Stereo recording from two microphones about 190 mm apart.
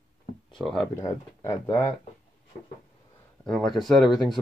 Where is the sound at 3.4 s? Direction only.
5° left (ahead or behind).